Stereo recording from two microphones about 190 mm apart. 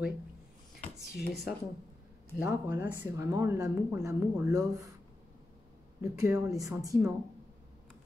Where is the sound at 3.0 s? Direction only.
15° right (ahead or behind).